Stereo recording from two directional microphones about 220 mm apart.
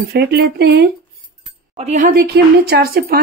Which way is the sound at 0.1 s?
50° right (ahead or behind).